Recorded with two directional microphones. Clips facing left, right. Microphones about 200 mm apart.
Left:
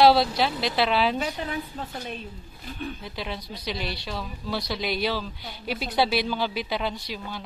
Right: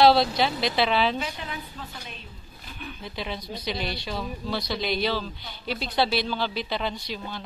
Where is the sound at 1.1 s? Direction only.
45° left (ahead or behind).